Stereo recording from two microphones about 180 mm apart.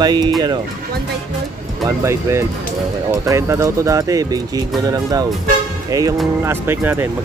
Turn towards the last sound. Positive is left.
turn(degrees=-10)  # may be behind; listen again after turning